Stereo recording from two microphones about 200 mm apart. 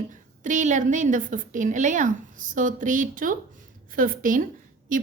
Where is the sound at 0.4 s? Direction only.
40° right (ahead or behind).